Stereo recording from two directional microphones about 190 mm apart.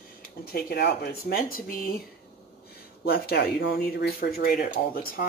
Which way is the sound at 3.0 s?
55° left (ahead or behind).